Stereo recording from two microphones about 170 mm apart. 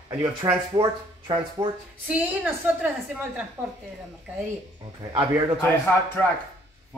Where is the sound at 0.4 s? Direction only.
25° right (ahead or behind).